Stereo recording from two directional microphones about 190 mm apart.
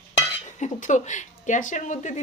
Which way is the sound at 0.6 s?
40° left (ahead or behind).